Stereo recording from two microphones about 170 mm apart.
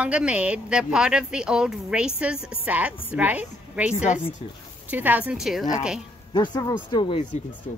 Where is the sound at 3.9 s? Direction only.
45° left (ahead or behind).